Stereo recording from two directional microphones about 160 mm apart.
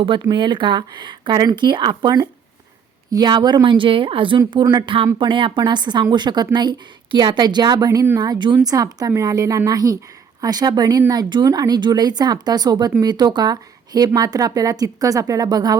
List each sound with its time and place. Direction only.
0.0 s a woman's voice: 30° right (ahead or behind)